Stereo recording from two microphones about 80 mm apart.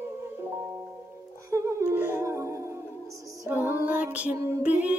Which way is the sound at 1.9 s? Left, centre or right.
Right.